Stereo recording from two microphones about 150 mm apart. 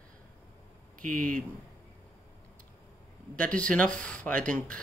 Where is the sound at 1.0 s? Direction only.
60° right (ahead or behind).